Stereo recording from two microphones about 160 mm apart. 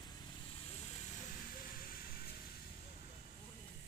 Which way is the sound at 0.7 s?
55° left (ahead or behind).